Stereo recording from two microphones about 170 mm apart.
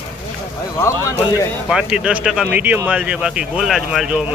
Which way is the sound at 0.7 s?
15° left (ahead or behind).